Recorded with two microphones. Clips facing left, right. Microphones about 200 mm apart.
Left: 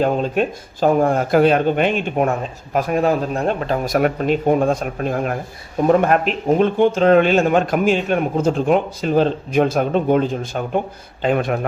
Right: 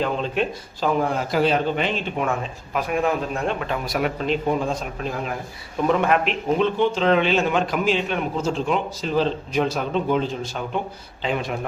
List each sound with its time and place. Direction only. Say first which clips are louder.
0.0 s speech: left 5 dB; 45° left (ahead or behind)
2.7 s speech: left 5 dB; 35° left (ahead or behind); by 11.6 s 55° left (ahead or behind)